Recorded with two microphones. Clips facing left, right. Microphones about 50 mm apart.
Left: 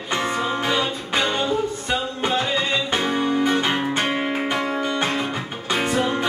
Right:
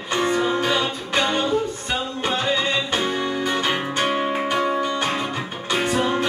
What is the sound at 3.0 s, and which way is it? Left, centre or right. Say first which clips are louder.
Music: left 3 dB; centre.